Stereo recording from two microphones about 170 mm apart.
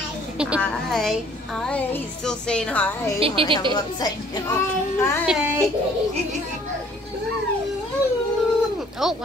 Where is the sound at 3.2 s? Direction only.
35° right (ahead or behind).